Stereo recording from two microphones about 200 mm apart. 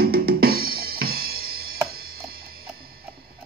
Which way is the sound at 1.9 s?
50° right (ahead or behind).